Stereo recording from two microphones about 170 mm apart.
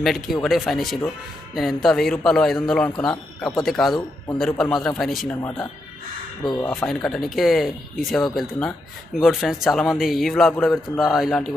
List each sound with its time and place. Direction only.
0.0 s a man's voice: centre (ahead or behind)
6.4 s speech: 25° left (ahead or behind)
6.9 s a man's voice: centre (ahead or behind)